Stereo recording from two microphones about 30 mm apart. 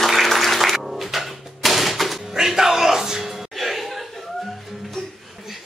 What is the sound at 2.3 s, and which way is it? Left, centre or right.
Music, centre.